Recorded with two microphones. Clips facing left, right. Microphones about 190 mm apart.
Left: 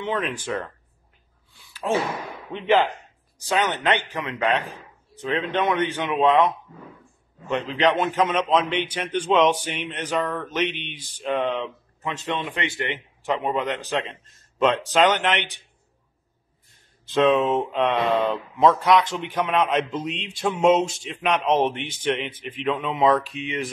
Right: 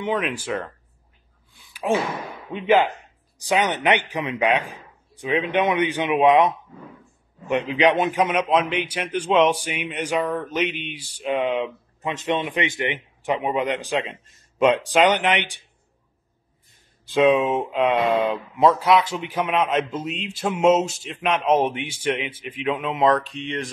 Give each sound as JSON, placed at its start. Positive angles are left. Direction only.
{"t": 0.0, "sound": "speech", "side_deg": -10}
{"t": 1.6, "sound": "a sound", "side_deg": -15}
{"t": 2.5, "sound": "speech", "side_deg": -10}
{"t": 17.0, "sound": "speech", "side_deg": -10}